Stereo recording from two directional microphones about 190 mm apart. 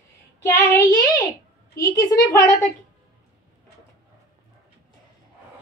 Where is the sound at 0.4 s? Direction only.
15° left (ahead or behind).